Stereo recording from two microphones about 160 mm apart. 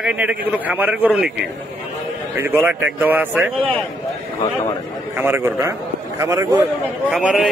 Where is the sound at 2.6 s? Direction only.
10° right (ahead or behind).